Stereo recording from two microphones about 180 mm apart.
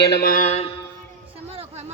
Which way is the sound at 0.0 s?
70° left (ahead or behind).